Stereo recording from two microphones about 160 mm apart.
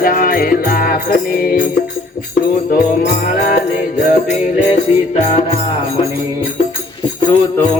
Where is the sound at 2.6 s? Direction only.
65° left (ahead or behind).